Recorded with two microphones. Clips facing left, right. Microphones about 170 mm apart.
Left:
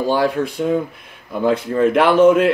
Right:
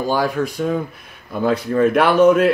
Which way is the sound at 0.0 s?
30° left (ahead or behind).